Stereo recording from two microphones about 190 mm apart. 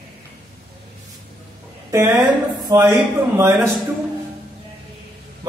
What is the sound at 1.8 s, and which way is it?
A woman's voice, 15° right (ahead or behind).